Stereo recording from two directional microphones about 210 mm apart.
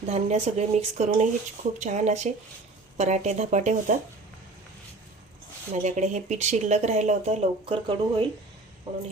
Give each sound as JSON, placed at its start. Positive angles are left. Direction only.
{"t": 0.1, "sound": "speech", "side_deg": -30}
{"t": 5.7, "sound": "speech", "side_deg": -35}